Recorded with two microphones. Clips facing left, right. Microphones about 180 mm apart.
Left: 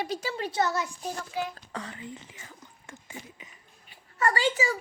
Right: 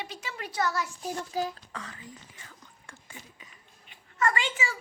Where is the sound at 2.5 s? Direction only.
20° left (ahead or behind).